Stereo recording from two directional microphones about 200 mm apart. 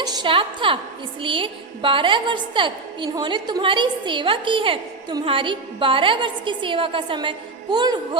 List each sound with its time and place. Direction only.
0.0 s a woman's voice: 20° right (ahead or behind)